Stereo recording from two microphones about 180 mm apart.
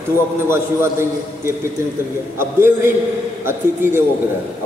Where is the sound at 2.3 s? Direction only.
15° right (ahead or behind).